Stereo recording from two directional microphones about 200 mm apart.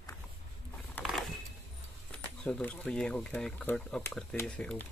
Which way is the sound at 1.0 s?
10° left (ahead or behind).